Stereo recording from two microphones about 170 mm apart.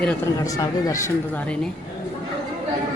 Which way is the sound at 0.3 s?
20° left (ahead or behind).